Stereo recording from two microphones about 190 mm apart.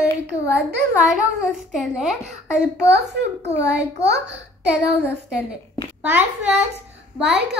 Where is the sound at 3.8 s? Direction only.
65° right (ahead or behind).